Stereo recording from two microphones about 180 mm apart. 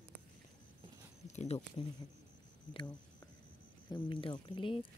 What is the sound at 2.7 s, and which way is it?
Speech, 25° left (ahead or behind).